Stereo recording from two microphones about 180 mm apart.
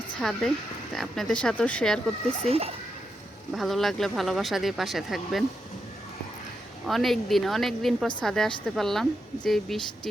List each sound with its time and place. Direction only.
0.2 s speech: centre (ahead or behind)
2.4 s a child's voice: 35° right (ahead or behind)
3.5 s speech: centre (ahead or behind)
6.8 s speech: centre (ahead or behind)